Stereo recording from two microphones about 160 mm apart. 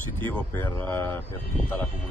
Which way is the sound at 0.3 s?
10° left (ahead or behind).